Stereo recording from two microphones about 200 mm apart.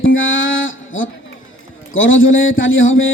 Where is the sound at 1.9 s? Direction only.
75° left (ahead or behind).